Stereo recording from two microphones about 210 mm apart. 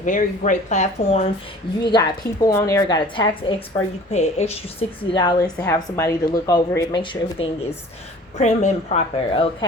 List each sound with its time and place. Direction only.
0.0 s a woman's voice: 35° left (ahead or behind)
1.9 s a woman's voice: 15° left (ahead or behind)